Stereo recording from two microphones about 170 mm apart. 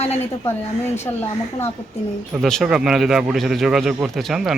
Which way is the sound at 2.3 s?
Centre (ahead or behind).